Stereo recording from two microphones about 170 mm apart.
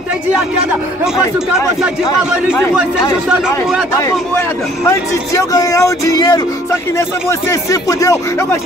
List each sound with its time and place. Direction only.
3.3 s speech: 5° right (ahead or behind)
4.0 s speech: 15° left (ahead or behind)